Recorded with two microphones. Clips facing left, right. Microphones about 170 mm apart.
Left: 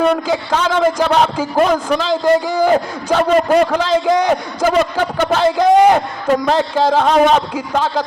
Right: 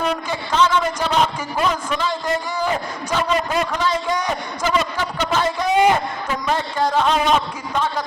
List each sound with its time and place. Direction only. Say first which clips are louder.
0.3 s a man's voice: left 2 dB; 75° left (ahead or behind)
1.5 s a man's voice: left 8 dB; 50° left (ahead or behind)
1.9 s a man's voice: left 9 dB; 90° left
3.1 s a man's voice: left 9 dB; 50° left (ahead or behind)
4.6 s a man's voice: left 6 dB; 55° left (ahead or behind)
6.2 s a man's voice: left 10 dB; 50° left (ahead or behind)
6.5 s a man's voice: left 2 dB; 90° left
7.0 s a man's voice: left 6 dB; 45° left (ahead or behind)